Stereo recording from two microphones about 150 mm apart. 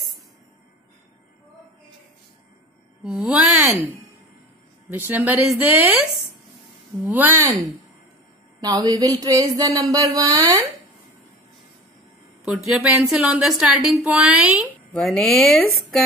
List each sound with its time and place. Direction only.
3.0 s mantra: 5° right (ahead or behind)
3.7 s speech: 15° left (ahead or behind)
4.9 s speech: 10° right (ahead or behind)
7.1 s speech: 10° right (ahead or behind)
12.6 s a woman's voice: 5° right (ahead or behind)